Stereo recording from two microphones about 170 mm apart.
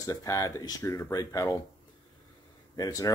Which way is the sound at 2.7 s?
20° left (ahead or behind).